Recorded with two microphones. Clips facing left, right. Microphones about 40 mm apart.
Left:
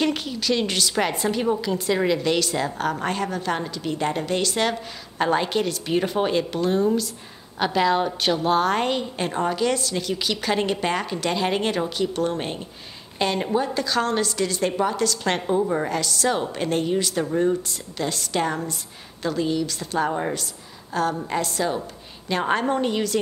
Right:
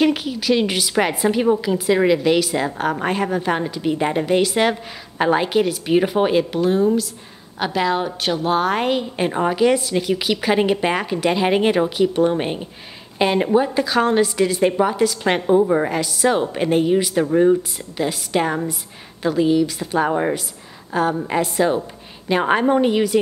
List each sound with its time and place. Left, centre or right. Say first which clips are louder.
0.0 s a woman's voice: right 5 dB; centre